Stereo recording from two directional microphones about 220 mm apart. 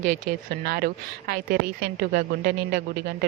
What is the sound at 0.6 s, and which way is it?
A woman's voice, 45° right (ahead or behind).